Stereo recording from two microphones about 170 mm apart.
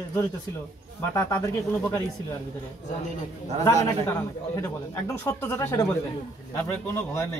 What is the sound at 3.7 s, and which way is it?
A man's voice, 15° left (ahead or behind).